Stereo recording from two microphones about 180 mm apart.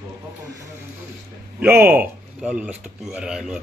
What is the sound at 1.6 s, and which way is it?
Speech, 10° right (ahead or behind).